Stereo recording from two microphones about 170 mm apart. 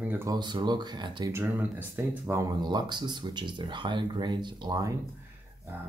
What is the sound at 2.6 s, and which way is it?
Speech, 25° right (ahead or behind).